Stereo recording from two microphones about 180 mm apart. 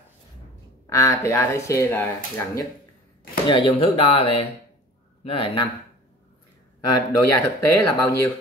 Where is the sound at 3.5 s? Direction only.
30° left (ahead or behind).